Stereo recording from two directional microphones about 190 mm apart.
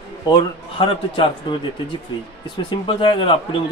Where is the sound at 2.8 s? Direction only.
30° left (ahead or behind).